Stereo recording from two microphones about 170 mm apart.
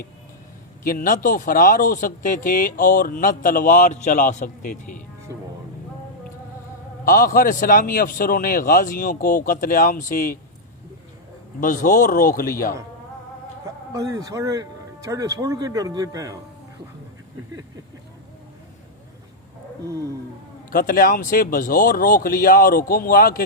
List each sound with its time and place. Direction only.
0.9 s speech: 55° left (ahead or behind)
7.0 s a man's voice: 55° left (ahead or behind)
11.6 s speech: 50° left (ahead or behind)
13.9 s speech: 20° right (ahead or behind)
20.7 s a man's voice: 55° left (ahead or behind)